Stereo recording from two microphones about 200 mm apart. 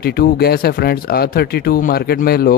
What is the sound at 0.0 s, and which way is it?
Speech, 50° left (ahead or behind).